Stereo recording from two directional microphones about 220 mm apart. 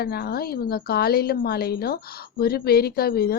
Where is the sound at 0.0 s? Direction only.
45° left (ahead or behind).